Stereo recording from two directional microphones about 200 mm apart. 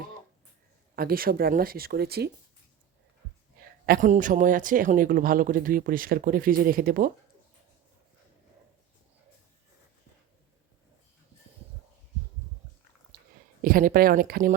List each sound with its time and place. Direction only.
0.9 s speech: 45° right (ahead or behind)
3.6 s speech: 50° right (ahead or behind)
13.1 s a sound: 45° right (ahead or behind)
13.6 s speech: 45° right (ahead or behind)